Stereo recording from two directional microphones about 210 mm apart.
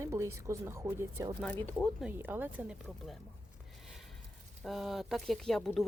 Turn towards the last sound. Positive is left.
turn(degrees=5)  # may be behind; listen again after turning